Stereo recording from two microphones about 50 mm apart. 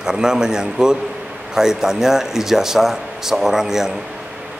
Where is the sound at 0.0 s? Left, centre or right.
Centre.